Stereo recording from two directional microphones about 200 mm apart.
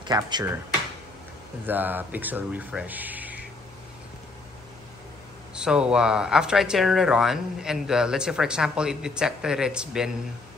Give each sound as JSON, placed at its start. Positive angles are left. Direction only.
{"t": 0.0, "sound": "speech", "side_deg": -20}
{"t": 1.7, "sound": "speech", "side_deg": -10}
{"t": 5.5, "sound": "speech", "side_deg": -5}